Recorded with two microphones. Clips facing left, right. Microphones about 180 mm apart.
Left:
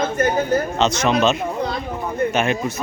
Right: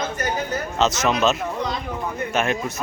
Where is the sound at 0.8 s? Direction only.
Centre (ahead or behind).